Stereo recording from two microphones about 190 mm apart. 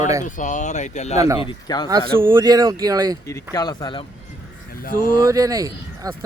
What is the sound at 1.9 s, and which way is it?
Speech, 10° right (ahead or behind).